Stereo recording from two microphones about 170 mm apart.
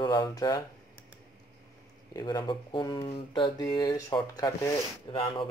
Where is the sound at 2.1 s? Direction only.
25° left (ahead or behind).